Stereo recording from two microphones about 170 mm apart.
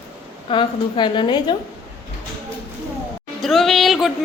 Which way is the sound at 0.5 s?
30° left (ahead or behind).